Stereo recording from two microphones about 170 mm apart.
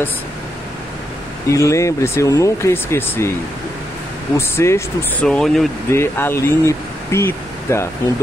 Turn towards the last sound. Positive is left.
turn(degrees=15)  # may be behind; listen again after turning